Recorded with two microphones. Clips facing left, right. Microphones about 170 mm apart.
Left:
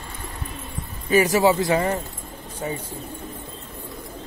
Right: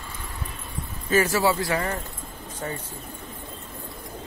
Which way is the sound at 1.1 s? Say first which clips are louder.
Left 4 dB; 15° left (ahead or behind).